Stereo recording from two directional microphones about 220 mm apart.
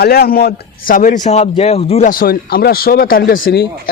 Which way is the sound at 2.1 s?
40° left (ahead or behind).